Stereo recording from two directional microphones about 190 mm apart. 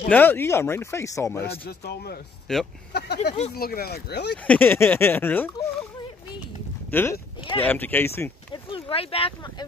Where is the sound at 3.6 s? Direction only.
55° left (ahead or behind).